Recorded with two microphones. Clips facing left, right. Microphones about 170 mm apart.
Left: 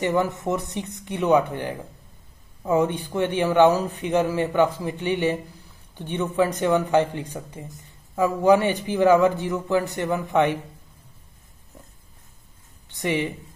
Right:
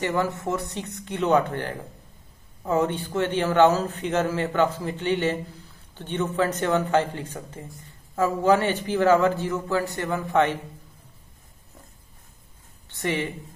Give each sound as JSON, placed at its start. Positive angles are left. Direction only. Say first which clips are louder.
{"t": 0.0, "sound": "a man's voice", "louder": "left 2 dB", "side_deg": 20}
{"t": 12.8, "sound": "speech", "louder": "left 2 dB", "side_deg": 15}